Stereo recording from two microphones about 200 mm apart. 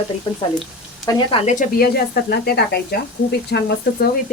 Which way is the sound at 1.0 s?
20° left (ahead or behind).